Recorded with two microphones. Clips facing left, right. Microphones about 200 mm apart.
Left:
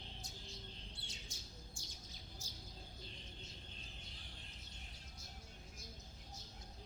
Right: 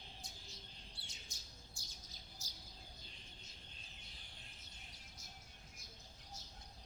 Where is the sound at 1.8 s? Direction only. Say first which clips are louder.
Left 4 dB; 40° right (ahead or behind).